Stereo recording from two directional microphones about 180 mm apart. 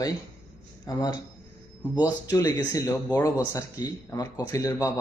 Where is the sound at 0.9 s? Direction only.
25° left (ahead or behind).